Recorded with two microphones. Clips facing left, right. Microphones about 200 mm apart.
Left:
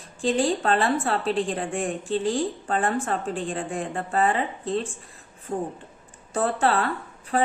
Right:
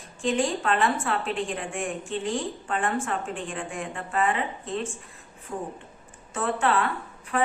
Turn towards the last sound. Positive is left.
turn(degrees=35)  # may be behind; listen again after turning